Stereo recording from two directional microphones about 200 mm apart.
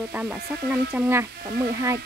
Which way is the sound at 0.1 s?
5° right (ahead or behind).